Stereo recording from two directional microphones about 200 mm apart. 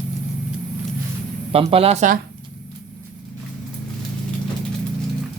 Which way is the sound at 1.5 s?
30° right (ahead or behind).